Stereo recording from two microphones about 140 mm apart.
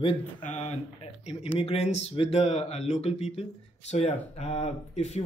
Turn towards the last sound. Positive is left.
turn(degrees=50)  # may be behind; listen again after turning